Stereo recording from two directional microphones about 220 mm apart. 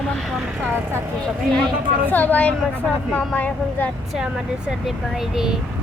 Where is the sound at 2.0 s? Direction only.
10° left (ahead or behind).